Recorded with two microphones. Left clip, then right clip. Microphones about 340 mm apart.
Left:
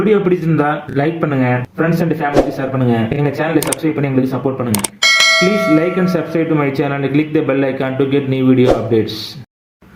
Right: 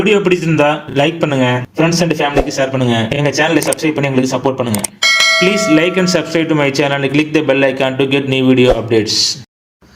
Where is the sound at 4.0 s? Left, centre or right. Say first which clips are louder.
Right 3 dB; right.